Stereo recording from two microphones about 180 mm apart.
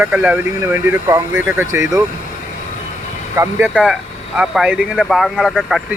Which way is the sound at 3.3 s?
15° right (ahead or behind).